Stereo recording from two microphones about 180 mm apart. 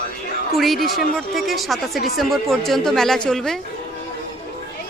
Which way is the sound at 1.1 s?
Centre (ahead or behind).